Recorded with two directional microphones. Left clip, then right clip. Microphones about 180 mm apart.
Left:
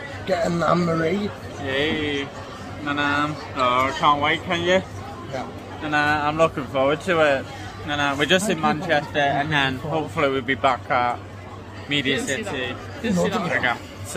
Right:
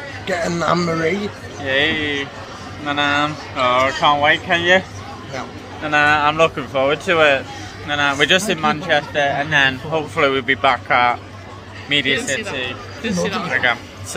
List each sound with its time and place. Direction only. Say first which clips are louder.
0.3 s speech: right 2 dB; 15° left (ahead or behind)
1.6 s speech: right 6 dB; 20° right (ahead or behind)
6.0 s speech: right 6 dB; 5° left (ahead or behind)
13.4 s speech: right 4 dB; 10° left (ahead or behind)